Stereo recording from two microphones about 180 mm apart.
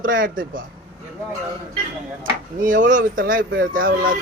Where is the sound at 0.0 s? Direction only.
50° right (ahead or behind).